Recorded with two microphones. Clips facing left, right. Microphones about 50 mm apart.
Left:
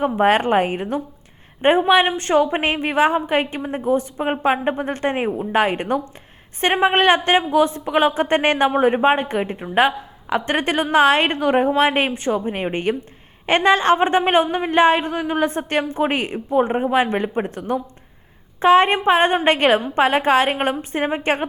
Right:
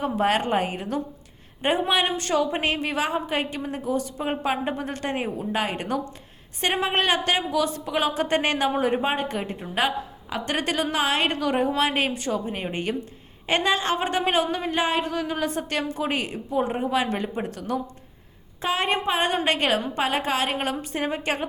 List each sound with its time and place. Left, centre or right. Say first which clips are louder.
0.0 s speech: left 6 dB; left